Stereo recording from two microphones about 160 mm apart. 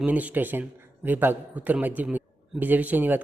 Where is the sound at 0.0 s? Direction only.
10° right (ahead or behind).